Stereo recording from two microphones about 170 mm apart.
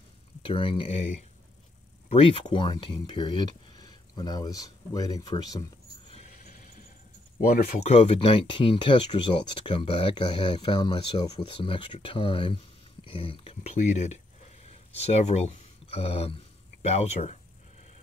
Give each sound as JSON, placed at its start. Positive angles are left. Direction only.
{"t": 0.4, "sound": "speech", "side_deg": 30}
{"t": 2.0, "sound": "speech", "side_deg": 30}
{"t": 7.3, "sound": "speech", "side_deg": 55}
{"t": 7.9, "sound": "speech", "side_deg": 40}